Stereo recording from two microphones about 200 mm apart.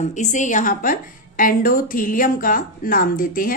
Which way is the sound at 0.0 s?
35° left (ahead or behind).